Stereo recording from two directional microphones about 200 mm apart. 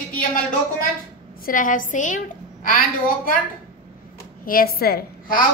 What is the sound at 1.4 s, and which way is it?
A woman's voice, 40° left (ahead or behind).